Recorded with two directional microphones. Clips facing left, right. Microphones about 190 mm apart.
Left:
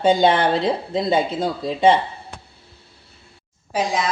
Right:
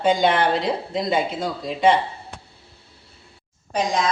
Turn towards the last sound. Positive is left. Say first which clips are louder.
# even
turn(degrees=5)  # may be behind; listen again after turning